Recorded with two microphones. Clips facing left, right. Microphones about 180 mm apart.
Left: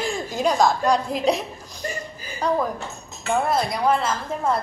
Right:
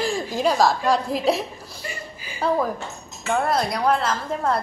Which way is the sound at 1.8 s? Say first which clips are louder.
Left 5 dB; 40° left (ahead or behind).